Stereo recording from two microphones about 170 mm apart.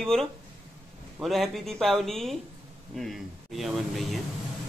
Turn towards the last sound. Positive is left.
turn(degrees=0)  # may be behind; listen again after turning